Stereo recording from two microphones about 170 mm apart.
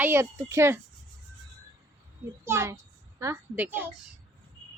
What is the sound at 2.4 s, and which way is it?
A woman's voice, 15° right (ahead or behind).